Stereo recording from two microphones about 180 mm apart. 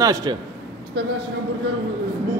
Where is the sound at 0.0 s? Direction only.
20° right (ahead or behind).